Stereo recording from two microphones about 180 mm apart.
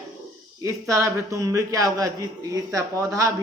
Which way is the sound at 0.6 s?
15° right (ahead or behind).